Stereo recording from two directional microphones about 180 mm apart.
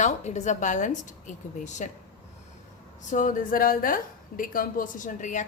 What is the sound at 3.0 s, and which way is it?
Speech, 45° left (ahead or behind).